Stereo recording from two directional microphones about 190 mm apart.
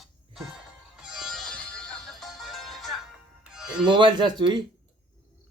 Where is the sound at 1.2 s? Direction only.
5° left (ahead or behind).